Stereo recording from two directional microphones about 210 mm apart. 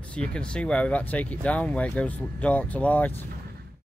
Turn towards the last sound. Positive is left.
turn(degrees=5)  # may be behind; listen again after turning